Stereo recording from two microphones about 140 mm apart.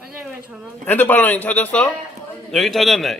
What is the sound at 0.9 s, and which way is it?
A man's voice, 15° left (ahead or behind).